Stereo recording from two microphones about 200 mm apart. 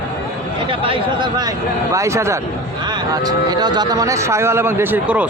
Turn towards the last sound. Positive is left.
turn(degrees=-5)  # may be behind; listen again after turning